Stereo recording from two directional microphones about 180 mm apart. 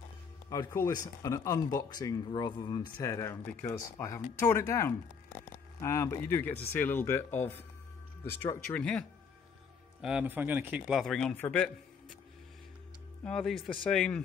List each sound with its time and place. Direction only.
0.5 s speech: 20° left (ahead or behind)
10.0 s a man's voice: 10° right (ahead or behind); by 11.7 s 10° left (ahead or behind)
13.2 s a man's voice: 5° left (ahead or behind)